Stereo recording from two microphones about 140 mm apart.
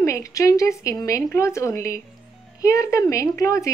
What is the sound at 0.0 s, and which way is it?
Speech, 20° left (ahead or behind).